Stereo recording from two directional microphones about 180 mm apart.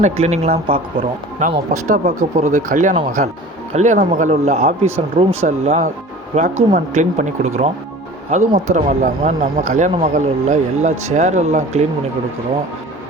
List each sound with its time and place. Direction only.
0.0 s speech: 40° right (ahead or behind)
1.4 s speech: 45° right (ahead or behind)